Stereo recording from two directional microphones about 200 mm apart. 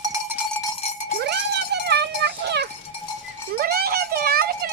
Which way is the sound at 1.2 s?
55° right (ahead or behind).